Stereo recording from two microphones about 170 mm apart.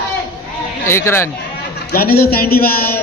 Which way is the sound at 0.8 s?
15° left (ahead or behind).